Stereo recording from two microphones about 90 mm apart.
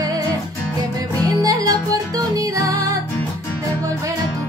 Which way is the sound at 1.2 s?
40° right (ahead or behind).